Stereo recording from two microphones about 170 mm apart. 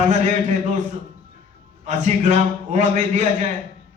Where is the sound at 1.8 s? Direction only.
45° right (ahead or behind).